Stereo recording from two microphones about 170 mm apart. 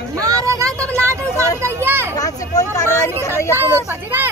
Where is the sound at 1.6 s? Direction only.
15° right (ahead or behind).